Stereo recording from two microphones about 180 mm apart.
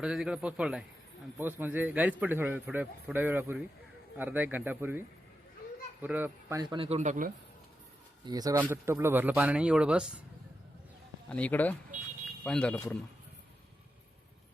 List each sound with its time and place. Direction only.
0.0 s a man's voice: 5° right (ahead or behind); by 6.8 s 20° right (ahead or behind)
6.8 s speech: 40° right (ahead or behind)
8.2 s a man's voice: 20° right (ahead or behind); by 10.1 s 5° right (ahead or behind)
11.3 s a man's voice: 10° left (ahead or behind)